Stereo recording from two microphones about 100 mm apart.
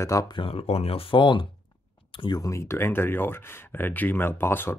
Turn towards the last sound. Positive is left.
turn(degrees=20)  # may be behind; listen again after turning